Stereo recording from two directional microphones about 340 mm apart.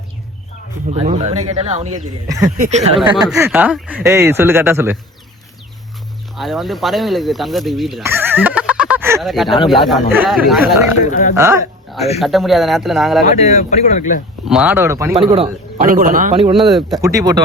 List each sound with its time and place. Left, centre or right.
0.9 s a man's voice: centre
3.2 s a man's voice: centre
6.3 s speech: centre
11.1 s speech: left
11.3 s speech: centre
13.2 s speech: centre
14.4 s a man's voice: centre
16.6 s speech: centre